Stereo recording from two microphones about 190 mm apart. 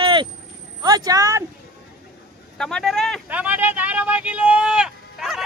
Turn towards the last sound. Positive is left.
turn(degrees=0)  # may be behind; listen again after turning